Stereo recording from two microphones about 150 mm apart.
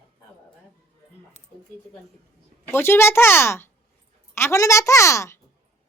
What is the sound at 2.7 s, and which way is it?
A woman's voice, 15° left (ahead or behind).